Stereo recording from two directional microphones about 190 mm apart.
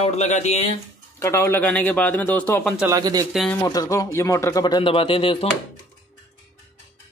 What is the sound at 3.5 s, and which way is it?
Speech, 15° left (ahead or behind).